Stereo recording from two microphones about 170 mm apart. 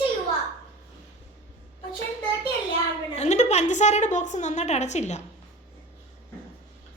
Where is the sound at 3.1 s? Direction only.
40° left (ahead or behind).